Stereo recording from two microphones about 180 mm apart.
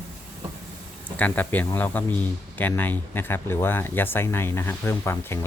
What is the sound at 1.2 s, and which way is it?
Speech, 10° left (ahead or behind).